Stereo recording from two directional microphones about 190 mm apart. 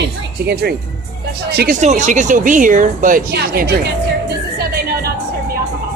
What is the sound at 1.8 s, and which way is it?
Speech, 40° right (ahead or behind).